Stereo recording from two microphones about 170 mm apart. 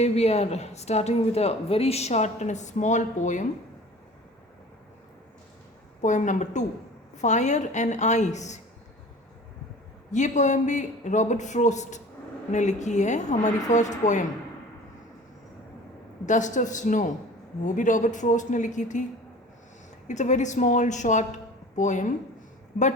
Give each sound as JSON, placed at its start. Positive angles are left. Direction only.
{"t": 0.0, "sound": "a woman's voice", "side_deg": 40}
{"t": 6.0, "sound": "speech", "side_deg": 45}
{"t": 10.1, "sound": "speech", "side_deg": 45}
{"t": 16.2, "sound": "speech", "side_deg": 45}
{"t": 20.1, "sound": "a woman's voice", "side_deg": 45}